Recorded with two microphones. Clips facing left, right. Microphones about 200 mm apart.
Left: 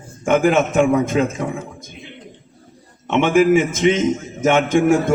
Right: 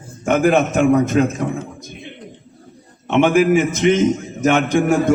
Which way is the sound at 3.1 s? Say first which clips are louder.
Right 3 dB; 50° right (ahead or behind).